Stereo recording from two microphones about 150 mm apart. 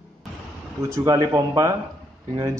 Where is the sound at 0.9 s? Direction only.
20° right (ahead or behind).